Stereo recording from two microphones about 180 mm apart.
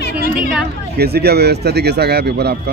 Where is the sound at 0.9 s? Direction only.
60° right (ahead or behind).